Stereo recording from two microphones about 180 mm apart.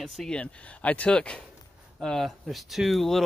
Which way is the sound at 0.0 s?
Centre (ahead or behind).